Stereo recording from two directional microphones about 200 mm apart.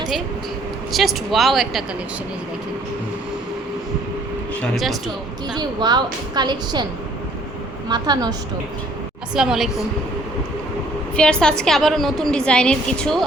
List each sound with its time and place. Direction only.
0.9 s a woman's voice: centre (ahead or behind)
4.6 s a woman's voice: centre (ahead or behind)
5.5 s a woman's voice: 20° right (ahead or behind)
7.9 s a woman's voice: 20° right (ahead or behind)
9.3 s a woman's voice: 5° right (ahead or behind)
11.2 s a woman's voice: 5° left (ahead or behind)